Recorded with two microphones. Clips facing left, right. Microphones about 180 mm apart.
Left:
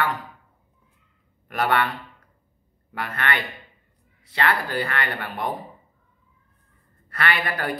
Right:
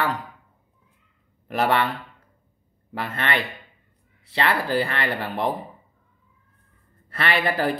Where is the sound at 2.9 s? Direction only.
25° right (ahead or behind).